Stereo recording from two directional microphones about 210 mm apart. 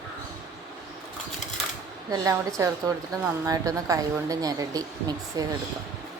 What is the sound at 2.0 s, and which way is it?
Speech, 15° right (ahead or behind).